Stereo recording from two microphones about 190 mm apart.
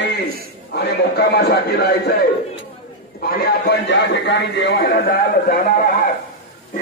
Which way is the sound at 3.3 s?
60° left (ahead or behind).